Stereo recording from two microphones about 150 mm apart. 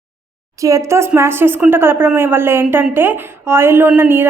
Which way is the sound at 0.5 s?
20° right (ahead or behind).